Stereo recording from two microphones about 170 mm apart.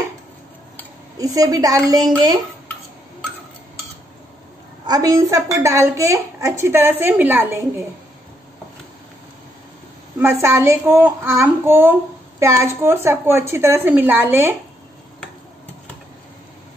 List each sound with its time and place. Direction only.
1.1 s a woman's voice: 20° right (ahead or behind)
4.8 s a child's voice: 20° right (ahead or behind)
10.1 s a child's voice: 15° right (ahead or behind)